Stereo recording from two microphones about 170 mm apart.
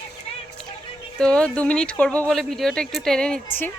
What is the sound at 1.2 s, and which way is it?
Speech, 5° left (ahead or behind).